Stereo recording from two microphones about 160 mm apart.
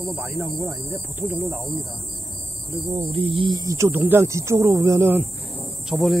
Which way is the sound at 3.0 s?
35° right (ahead or behind).